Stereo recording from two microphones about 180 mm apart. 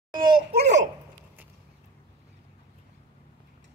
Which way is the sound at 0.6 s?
40° right (ahead or behind).